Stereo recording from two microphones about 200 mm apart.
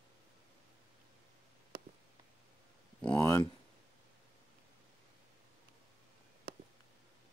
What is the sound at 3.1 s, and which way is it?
Speech, 15° left (ahead or behind).